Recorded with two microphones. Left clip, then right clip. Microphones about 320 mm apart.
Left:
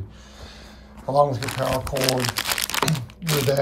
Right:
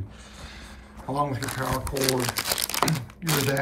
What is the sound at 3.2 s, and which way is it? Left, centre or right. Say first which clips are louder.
Speech: left 4 dB; centre.